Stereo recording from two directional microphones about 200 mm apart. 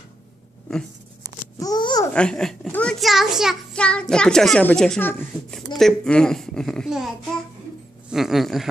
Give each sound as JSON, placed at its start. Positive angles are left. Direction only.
{"t": 1.6, "sound": "babbling", "side_deg": 20}
{"t": 2.1, "sound": "a child's voice", "side_deg": 5}
{"t": 8.1, "sound": "a child's voice", "side_deg": 0}